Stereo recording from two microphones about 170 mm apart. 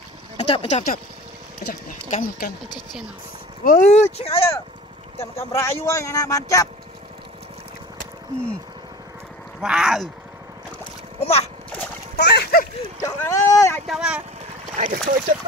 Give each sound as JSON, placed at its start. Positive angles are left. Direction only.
{"t": 0.4, "sound": "speech", "side_deg": 40}
{"t": 1.7, "sound": "speech", "side_deg": 55}
{"t": 3.6, "sound": "speech", "side_deg": 45}
{"t": 5.5, "sound": "speech", "side_deg": 15}
{"t": 9.6, "sound": "speech", "side_deg": -5}
{"t": 11.1, "sound": "splash", "side_deg": 40}
{"t": 12.2, "sound": "splash", "side_deg": 70}
{"t": 13.0, "sound": "boat", "side_deg": 20}
{"t": 13.8, "sound": "speech", "side_deg": -5}
{"t": 14.8, "sound": "speech", "side_deg": -50}